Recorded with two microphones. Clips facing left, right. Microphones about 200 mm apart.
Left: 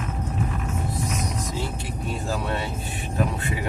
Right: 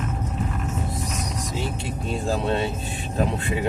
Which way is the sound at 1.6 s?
25° right (ahead or behind).